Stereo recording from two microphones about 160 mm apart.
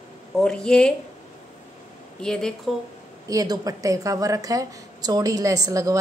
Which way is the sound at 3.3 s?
20° right (ahead or behind).